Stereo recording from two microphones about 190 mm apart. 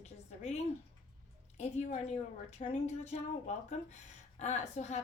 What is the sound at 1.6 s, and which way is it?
A woman's voice, 35° left (ahead or behind).